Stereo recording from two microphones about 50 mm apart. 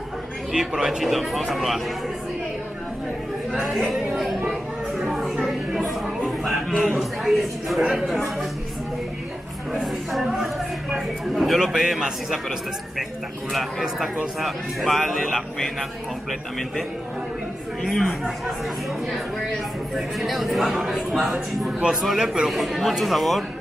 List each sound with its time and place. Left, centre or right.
0.5 s a man's voice: centre
1.0 s speech: centre
3.5 s speech: centre
4.5 s a sound: centre
10.4 s a man's voice: centre
17.8 s speech: centre
21.6 s a man's voice: centre
22.0 s a man's voice: centre
22.5 s speech: centre